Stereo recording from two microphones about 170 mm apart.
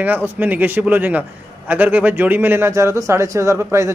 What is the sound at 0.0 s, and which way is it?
Speech, 10° right (ahead or behind).